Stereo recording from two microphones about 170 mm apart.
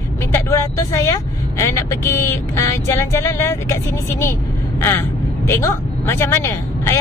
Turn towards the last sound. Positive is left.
turn(degrees=15)  # may be behind; listen again after turning